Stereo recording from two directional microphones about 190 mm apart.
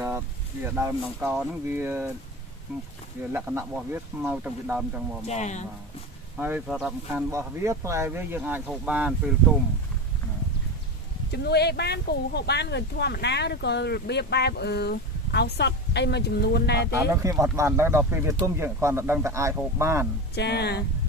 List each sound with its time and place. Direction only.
0.7 s speech: 10° right (ahead or behind)
3.3 s speech: 5° right (ahead or behind)
5.2 s speech: 35° left (ahead or behind)
6.3 s speech: 5° right (ahead or behind)
7.2 s speech: 15° right (ahead or behind)
11.3 s speech: 60° left (ahead or behind)
17.1 s speech: 15° right (ahead or behind)
20.3 s speech: 60° left (ahead or behind)